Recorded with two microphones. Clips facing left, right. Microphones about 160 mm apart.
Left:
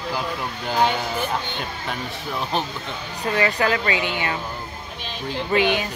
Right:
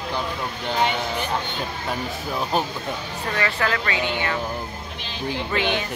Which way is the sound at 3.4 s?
20° left (ahead or behind).